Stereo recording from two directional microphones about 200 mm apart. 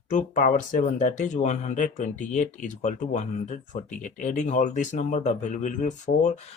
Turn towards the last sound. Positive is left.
turn(degrees=35)  # may be behind; listen again after turning